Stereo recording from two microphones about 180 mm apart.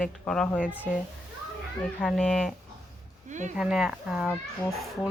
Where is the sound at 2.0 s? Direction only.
Centre (ahead or behind).